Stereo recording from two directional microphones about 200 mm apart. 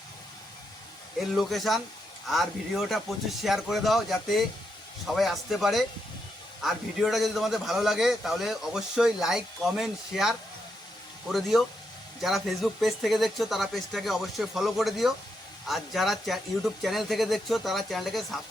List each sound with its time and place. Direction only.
1.4 s a man's voice: centre (ahead or behind)